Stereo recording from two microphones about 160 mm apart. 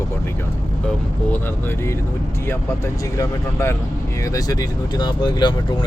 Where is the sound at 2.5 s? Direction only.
15° left (ahead or behind).